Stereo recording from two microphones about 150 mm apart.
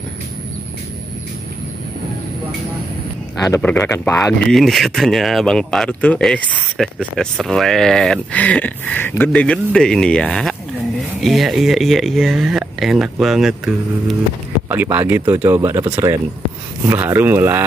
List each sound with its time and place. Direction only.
3.6 s speech: 15° left (ahead or behind)
4.2 s speech: centre (ahead or behind)
14.7 s speech: 15° right (ahead or behind)